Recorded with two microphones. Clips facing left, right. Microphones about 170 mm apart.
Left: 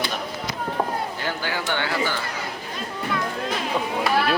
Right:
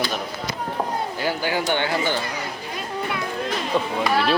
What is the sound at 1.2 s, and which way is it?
Speech, 15° right (ahead or behind).